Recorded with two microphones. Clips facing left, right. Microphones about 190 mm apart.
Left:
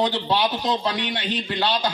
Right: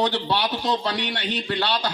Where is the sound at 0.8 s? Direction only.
65° right (ahead or behind).